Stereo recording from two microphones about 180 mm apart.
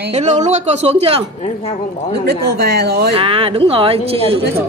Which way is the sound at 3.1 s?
30° right (ahead or behind).